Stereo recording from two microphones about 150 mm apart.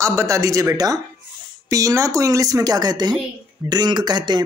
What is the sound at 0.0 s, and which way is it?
A woman's voice, 20° right (ahead or behind).